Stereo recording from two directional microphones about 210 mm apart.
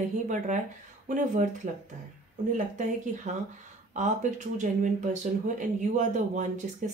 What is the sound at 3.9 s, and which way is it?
Speech, 35° right (ahead or behind).